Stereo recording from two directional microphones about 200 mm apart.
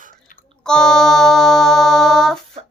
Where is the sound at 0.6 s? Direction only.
5° left (ahead or behind).